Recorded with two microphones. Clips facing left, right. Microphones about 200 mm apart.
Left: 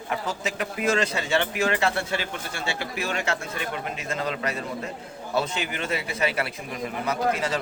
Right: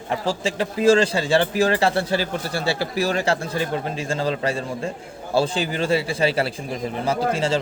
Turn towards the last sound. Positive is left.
turn(degrees=-30)  # may be behind; listen again after turning